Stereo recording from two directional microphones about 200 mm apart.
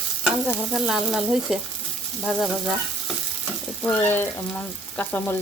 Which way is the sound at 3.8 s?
10° left (ahead or behind).